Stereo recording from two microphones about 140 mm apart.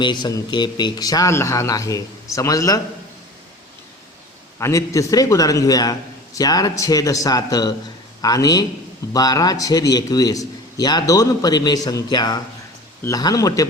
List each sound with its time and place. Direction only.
0.0 s a man's voice: 30° left (ahead or behind)
4.6 s a man's voice: 20° left (ahead or behind)